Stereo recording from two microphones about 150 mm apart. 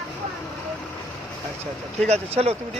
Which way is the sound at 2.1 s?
45° right (ahead or behind).